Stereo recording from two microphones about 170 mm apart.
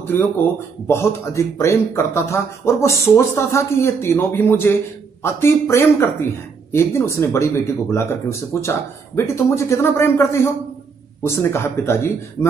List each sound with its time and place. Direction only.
0.8 s speech: 15° left (ahead or behind)